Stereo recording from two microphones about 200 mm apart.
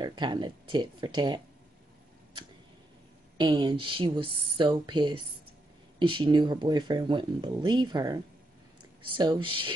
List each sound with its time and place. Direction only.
0.0 s speech: 20° right (ahead or behind)
3.3 s speech: 20° right (ahead or behind)